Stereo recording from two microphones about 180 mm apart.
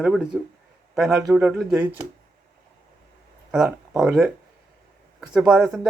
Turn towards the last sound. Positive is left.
turn(degrees=-5)  # may be behind; listen again after turning